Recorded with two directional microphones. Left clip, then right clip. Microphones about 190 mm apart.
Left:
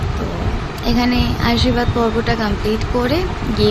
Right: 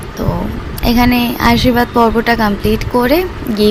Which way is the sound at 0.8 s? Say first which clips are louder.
Right 6 dB; 50° right (ahead or behind).